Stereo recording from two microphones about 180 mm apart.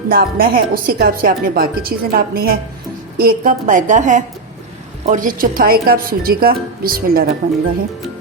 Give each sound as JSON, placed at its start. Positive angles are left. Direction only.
{"t": 0.1, "sound": "a woman's voice", "side_deg": -55}